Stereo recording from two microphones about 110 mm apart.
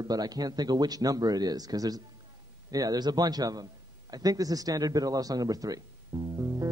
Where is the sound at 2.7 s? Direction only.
35° right (ahead or behind).